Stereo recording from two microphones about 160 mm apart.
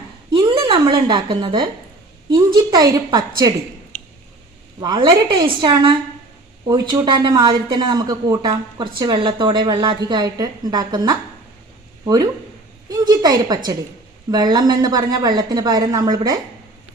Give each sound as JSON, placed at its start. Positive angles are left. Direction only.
{"t": 0.3, "sound": "a sound", "side_deg": -30}
{"t": 1.0, "sound": "speech", "side_deg": -30}
{"t": 4.8, "sound": "speech", "side_deg": -30}